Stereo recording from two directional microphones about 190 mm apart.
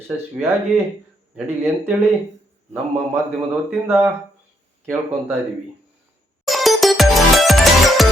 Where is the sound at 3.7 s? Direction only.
10° right (ahead or behind).